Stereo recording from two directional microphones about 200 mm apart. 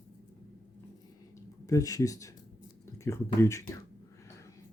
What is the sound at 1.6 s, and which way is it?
Speech, 15° left (ahead or behind).